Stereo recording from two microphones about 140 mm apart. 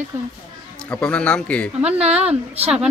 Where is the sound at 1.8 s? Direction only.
50° right (ahead or behind).